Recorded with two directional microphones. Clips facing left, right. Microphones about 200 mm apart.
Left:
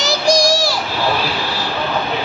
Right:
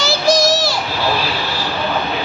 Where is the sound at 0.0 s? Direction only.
15° left (ahead or behind).